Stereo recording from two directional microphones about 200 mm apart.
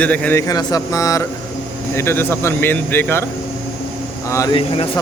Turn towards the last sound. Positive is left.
turn(degrees=25)  # may be behind; listen again after turning